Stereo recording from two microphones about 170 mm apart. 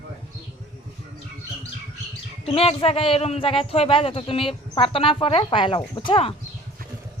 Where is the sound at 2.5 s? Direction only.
35° left (ahead or behind).